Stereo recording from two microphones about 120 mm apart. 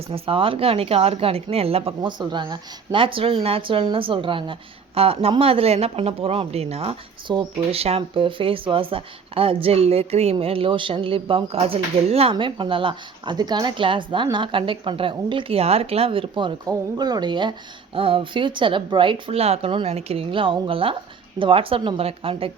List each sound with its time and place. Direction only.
0.1 s speech: 50° right (ahead or behind)
2.0 s speech: 40° right (ahead or behind); by 6.9 s 60° right (ahead or behind)
7.3 s speech: 35° right (ahead or behind)
7.7 s speech: 55° right (ahead or behind)
10.3 s speech: 50° right (ahead or behind)